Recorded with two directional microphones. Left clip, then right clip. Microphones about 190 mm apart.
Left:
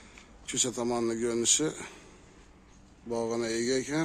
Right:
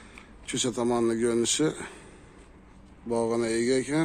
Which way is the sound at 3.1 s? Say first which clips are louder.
Right 4 dB; centre (ahead or behind).